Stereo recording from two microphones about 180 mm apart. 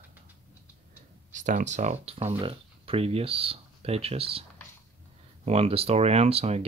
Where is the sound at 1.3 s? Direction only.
45° right (ahead or behind).